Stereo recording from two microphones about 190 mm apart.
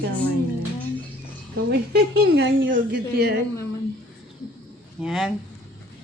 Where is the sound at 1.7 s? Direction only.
60° right (ahead or behind).